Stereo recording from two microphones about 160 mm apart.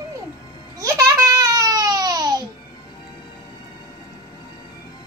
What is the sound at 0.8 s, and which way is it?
Babbling, 20° right (ahead or behind).